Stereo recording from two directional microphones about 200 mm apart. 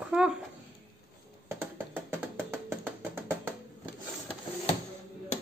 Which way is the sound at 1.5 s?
10° right (ahead or behind).